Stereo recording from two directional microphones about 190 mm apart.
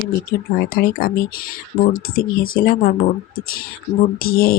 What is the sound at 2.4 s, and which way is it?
Speech, 50° left (ahead or behind).